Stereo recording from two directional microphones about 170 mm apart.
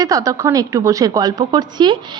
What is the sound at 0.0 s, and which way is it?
A woman's voice, 20° right (ahead or behind).